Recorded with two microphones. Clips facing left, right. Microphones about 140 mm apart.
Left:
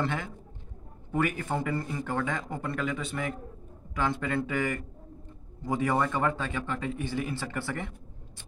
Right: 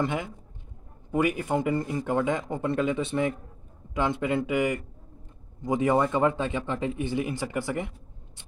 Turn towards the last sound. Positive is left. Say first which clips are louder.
# right 4 dB
turn(degrees=-15)  # may be behind; listen again after turning